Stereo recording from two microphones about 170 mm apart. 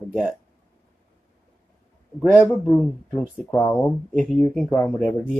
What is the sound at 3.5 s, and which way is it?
Speech, 20° left (ahead or behind).